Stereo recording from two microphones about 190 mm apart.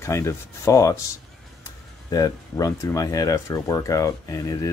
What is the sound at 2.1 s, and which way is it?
Speech, 20° left (ahead or behind).